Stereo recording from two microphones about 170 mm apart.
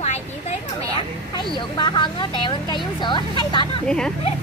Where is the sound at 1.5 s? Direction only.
30° left (ahead or behind).